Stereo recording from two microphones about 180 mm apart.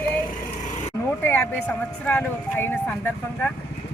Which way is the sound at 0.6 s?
40° left (ahead or behind).